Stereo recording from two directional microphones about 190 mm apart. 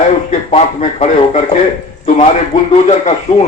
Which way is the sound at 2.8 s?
35° left (ahead or behind).